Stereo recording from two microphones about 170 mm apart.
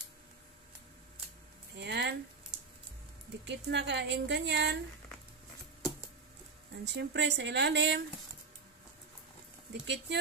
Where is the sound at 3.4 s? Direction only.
90° right.